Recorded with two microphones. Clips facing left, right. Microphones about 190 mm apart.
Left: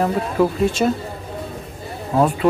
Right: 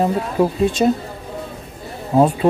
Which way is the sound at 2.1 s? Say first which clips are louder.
Right 3 dB; 20° right (ahead or behind).